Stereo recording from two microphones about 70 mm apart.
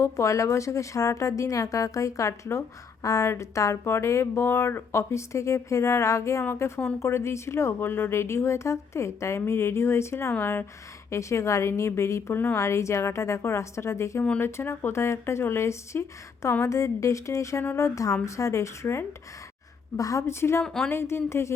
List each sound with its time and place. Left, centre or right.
0.0 s speech: left
11.1 s speech: left
20.0 s a woman's voice: left
20.2 s speech: left
20.7 s speech: centre
20.9 s speech: left